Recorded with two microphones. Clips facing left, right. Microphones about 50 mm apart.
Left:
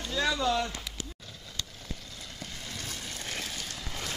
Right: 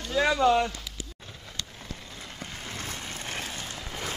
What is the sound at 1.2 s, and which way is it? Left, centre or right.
Vehicle, right.